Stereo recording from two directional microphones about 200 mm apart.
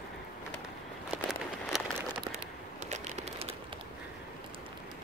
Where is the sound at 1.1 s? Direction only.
Centre (ahead or behind).